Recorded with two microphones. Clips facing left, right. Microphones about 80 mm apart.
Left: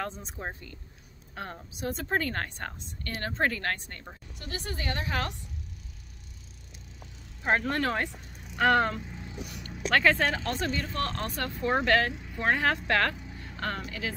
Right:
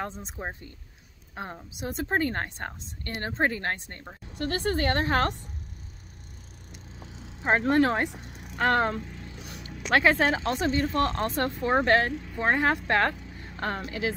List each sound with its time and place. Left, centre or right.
0.0 s a woman's voice: right
4.4 s a woman's voice: right
7.0 s vehicle: right
8.5 s speech: centre
9.6 s speech: centre
10.7 s a woman's voice: right